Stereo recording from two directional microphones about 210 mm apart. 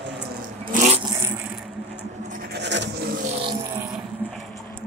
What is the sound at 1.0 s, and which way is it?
Vehicle, 15° right (ahead or behind).